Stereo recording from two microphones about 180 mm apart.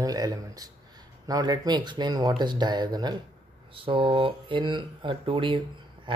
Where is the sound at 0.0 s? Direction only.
20° right (ahead or behind).